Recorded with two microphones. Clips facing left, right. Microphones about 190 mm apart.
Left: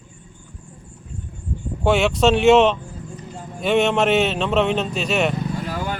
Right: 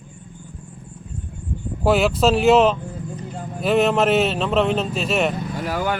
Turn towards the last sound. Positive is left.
turn(degrees=-70)  # may be behind; listen again after turning